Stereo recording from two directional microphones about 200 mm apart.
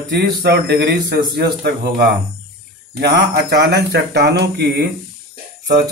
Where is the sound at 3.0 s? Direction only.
55° right (ahead or behind).